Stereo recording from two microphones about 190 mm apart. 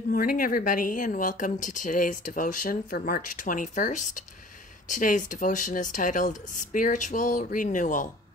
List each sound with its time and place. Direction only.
0.1 s a woman's voice: 50° left (ahead or behind)